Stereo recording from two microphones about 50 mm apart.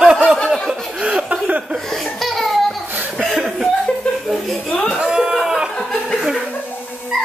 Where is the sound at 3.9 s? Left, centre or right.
Centre.